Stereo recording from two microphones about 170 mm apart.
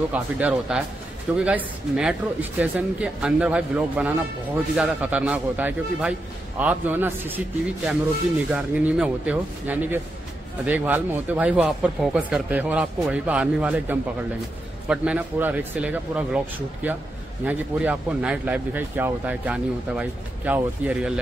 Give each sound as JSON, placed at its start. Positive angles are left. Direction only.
{"t": 0.1, "sound": "speech", "side_deg": -5}